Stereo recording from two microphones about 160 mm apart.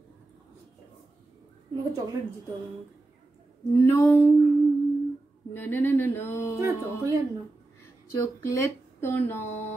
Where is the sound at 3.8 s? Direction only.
15° left (ahead or behind).